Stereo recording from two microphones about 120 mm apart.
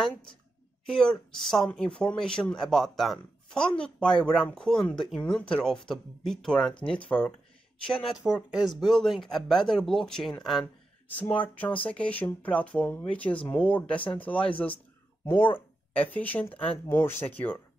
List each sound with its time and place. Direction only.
0.8 s speech: 5° left (ahead or behind)
8.2 s speech: 5° right (ahead or behind); by 17.6 s 15° left (ahead or behind)